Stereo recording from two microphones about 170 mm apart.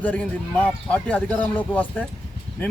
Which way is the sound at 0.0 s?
5° left (ahead or behind).